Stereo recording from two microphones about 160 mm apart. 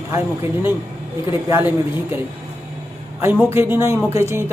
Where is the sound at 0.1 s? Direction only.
15° right (ahead or behind).